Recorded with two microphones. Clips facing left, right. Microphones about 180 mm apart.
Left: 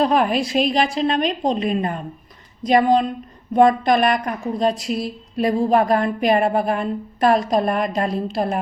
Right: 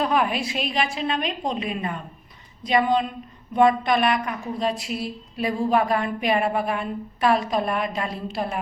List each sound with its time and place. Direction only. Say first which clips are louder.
0.0 s a woman's voice: left 5 dB; 35° left (ahead or behind)